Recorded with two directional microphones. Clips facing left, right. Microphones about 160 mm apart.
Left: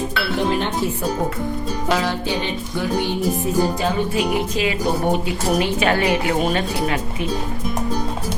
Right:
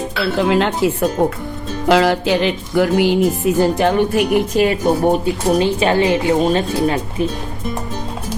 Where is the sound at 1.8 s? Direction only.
80° right; by 5.2 s 45° right (ahead or behind).